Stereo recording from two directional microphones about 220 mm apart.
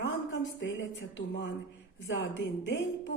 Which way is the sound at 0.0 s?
55° left (ahead or behind).